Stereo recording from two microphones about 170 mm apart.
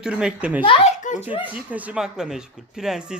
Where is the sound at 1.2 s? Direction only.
10° right (ahead or behind).